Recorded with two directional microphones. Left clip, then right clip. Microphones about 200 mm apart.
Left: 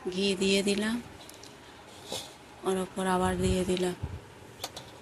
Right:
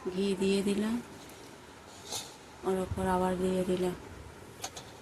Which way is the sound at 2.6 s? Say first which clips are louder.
Left 2 dB; 20° left (ahead or behind).